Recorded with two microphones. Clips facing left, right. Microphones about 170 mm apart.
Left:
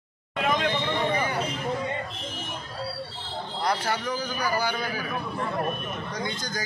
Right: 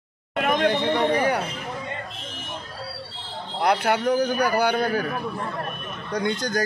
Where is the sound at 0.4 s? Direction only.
60° right (ahead or behind).